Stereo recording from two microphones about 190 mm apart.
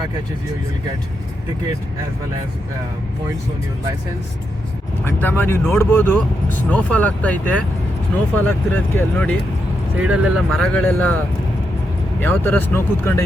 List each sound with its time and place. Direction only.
5.0 s speech: 10° left (ahead or behind)
9.9 s speech: 5° right (ahead or behind)
12.2 s speech: 10° left (ahead or behind)